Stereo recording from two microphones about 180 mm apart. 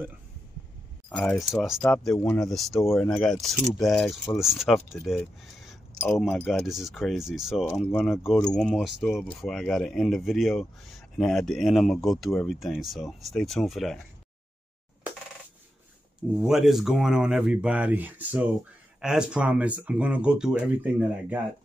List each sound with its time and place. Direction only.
1.1 s speech: 5° left (ahead or behind)
16.4 s speech: centre (ahead or behind)